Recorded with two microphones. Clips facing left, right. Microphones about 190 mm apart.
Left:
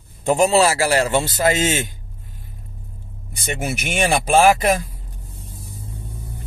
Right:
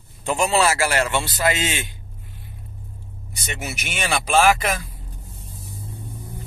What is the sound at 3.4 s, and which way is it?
Speech, 50° left (ahead or behind).